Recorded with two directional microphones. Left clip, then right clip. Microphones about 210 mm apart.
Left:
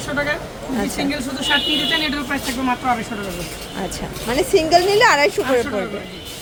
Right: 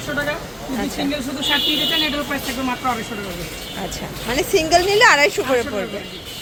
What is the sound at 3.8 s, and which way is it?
Speech, 10° left (ahead or behind).